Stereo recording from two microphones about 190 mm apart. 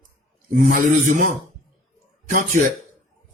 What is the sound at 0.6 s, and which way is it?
Speech, 45° right (ahead or behind).